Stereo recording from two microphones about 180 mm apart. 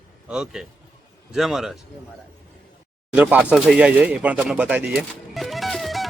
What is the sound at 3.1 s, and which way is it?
Pigeon, 10° right (ahead or behind).